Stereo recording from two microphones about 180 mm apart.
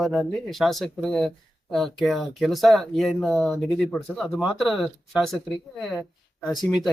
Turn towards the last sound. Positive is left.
turn(degrees=0)  # may be behind; listen again after turning